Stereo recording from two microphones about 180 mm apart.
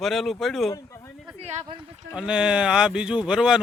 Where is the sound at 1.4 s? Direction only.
35° right (ahead or behind).